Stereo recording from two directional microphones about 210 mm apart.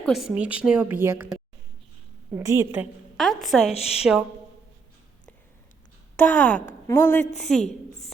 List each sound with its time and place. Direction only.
0.0 s a woman's voice: centre (ahead or behind)
2.3 s a woman's voice: 15° right (ahead or behind)
3.2 s a woman's voice: centre (ahead or behind)
3.7 s a woman's voice: 30° left (ahead or behind)
4.0 s a woman's voice: 5° right (ahead or behind)
6.1 s a woman's voice: 5° left (ahead or behind)